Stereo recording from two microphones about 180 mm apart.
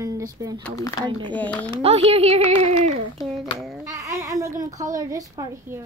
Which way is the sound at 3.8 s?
15° right (ahead or behind).